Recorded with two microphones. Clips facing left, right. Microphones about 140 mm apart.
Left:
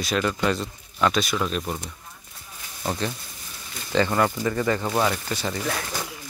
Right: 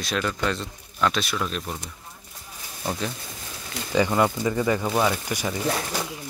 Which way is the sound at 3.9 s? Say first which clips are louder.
Even; 15° right (ahead or behind).